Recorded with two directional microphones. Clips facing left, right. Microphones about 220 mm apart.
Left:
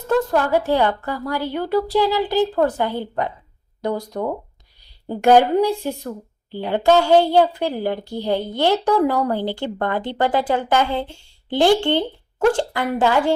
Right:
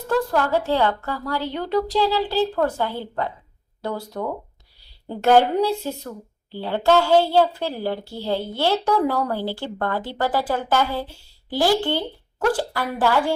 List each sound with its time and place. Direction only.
0.1 s a woman's voice: 20° left (ahead or behind)